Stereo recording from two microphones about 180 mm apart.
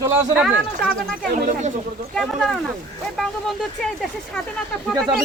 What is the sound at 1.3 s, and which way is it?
Speech, 40° right (ahead or behind).